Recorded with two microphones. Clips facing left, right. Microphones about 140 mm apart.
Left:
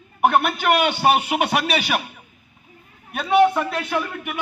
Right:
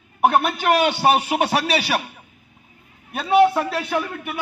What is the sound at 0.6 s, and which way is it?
Speech, 35° right (ahead or behind).